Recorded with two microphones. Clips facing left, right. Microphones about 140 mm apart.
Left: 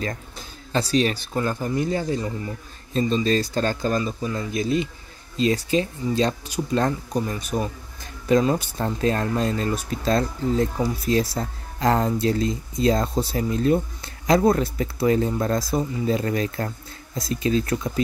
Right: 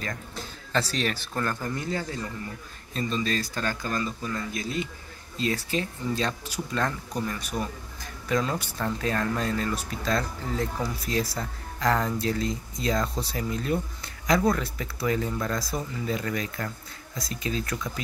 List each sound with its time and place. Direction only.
0.7 s speech: 15° left (ahead or behind)